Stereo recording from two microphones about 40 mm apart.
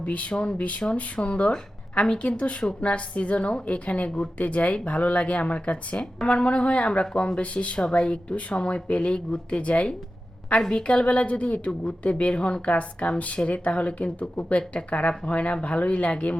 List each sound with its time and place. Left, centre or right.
0.0 s speech: left